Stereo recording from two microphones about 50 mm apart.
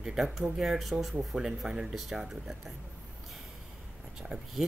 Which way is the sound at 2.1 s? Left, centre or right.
Centre.